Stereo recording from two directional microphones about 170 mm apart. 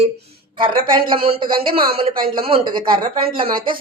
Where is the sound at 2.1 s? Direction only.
60° right (ahead or behind).